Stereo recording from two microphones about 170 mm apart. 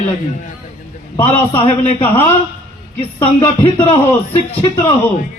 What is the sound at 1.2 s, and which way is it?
A man's voice, 35° left (ahead or behind).